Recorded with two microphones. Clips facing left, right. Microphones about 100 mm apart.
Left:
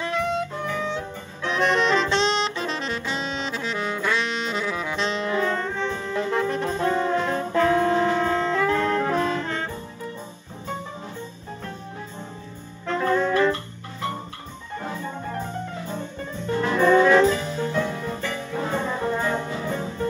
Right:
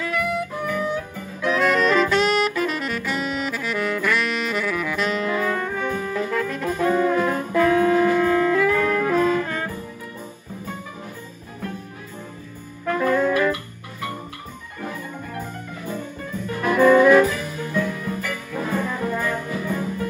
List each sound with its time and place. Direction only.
0.0 s music: 25° left (ahead or behind)
12.9 s music: 25° left (ahead or behind)
15.9 s music: 25° left (ahead or behind)